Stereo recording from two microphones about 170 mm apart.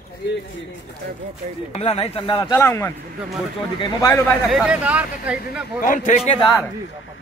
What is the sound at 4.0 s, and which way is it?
Speech, 15° left (ahead or behind).